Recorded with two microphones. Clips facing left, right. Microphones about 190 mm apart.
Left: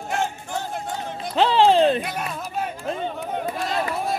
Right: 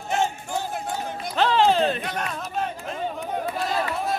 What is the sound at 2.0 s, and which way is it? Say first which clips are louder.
Speech: left 2 dB; 10° left (ahead or behind).